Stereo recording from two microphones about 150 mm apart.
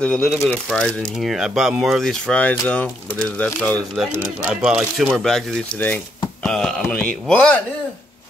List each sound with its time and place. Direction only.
0.0 s speech: 5° left (ahead or behind)
4.5 s speech: 5° right (ahead or behind)